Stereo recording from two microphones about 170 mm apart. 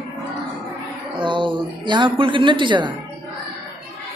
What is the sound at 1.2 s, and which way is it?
A man's voice, 30° right (ahead or behind).